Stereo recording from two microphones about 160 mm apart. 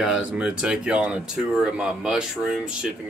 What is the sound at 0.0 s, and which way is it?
Speech, 5° right (ahead or behind).